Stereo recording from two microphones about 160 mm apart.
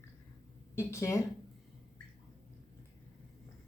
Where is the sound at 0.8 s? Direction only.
20° left (ahead or behind).